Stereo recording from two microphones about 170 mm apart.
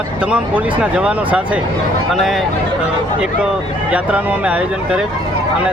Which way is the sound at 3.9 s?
10° right (ahead or behind).